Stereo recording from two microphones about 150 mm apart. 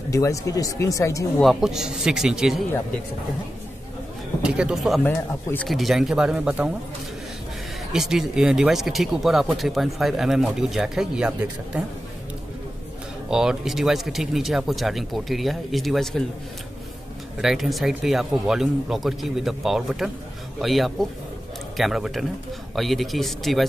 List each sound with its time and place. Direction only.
0.1 s speech: 20° left (ahead or behind)
1.4 s speech: centre (ahead or behind)
4.4 s speech: 5° right (ahead or behind)
5.0 s speech: 15° left (ahead or behind)
5.7 s speech: centre (ahead or behind)
7.9 s speech: 5° right (ahead or behind)
13.3 s speech: 5° right (ahead or behind)
17.4 s speech: centre (ahead or behind)